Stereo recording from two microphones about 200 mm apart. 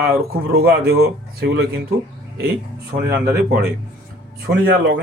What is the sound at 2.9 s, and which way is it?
Speech, 55° right (ahead or behind).